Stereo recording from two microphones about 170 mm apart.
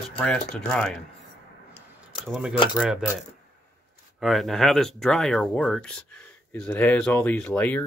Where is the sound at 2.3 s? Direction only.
5° right (ahead or behind).